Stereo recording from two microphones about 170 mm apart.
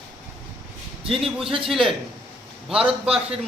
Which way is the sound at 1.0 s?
35° right (ahead or behind).